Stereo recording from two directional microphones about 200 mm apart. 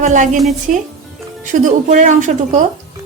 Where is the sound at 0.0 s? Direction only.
35° right (ahead or behind).